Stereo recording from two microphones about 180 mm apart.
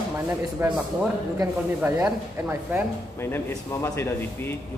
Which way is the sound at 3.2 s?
15° left (ahead or behind).